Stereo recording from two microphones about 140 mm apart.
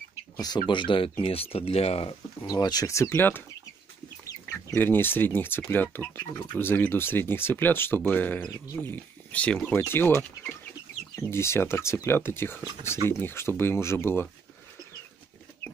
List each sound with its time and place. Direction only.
0.4 s speech: 30° left (ahead or behind); by 2.1 s 45° left (ahead or behind)
2.4 s speech: 30° left (ahead or behind)
4.2 s chicken: 25° left (ahead or behind)
5.6 s speech: 15° left (ahead or behind)